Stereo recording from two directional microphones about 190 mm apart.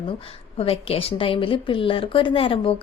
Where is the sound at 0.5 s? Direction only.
30° left (ahead or behind).